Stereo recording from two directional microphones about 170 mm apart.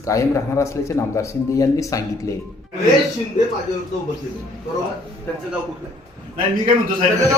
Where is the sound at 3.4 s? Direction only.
50° left (ahead or behind).